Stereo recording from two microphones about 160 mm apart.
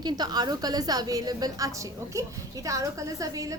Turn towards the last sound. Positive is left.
turn(degrees=-20)  # may be behind; listen again after turning